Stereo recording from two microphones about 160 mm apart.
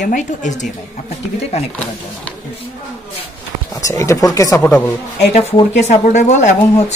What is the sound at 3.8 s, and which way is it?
Speech, 20° left (ahead or behind).